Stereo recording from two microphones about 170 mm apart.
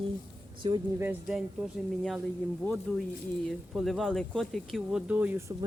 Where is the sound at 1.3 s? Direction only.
Centre (ahead or behind).